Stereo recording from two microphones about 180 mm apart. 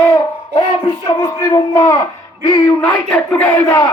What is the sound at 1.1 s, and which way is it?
Speech, 15° left (ahead or behind).